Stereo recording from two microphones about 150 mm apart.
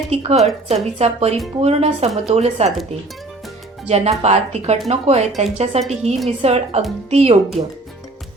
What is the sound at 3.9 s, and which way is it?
A woman's voice, 45° right (ahead or behind).